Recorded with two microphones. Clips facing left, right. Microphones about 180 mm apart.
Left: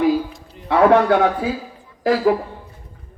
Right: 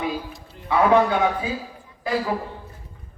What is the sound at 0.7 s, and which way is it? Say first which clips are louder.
Speech: left 4 dB; 75° left (ahead or behind).